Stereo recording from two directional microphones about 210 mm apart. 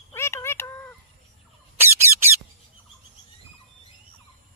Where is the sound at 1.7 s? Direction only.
10° right (ahead or behind).